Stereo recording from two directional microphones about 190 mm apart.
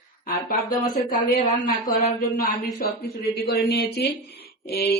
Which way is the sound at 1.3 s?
45° left (ahead or behind).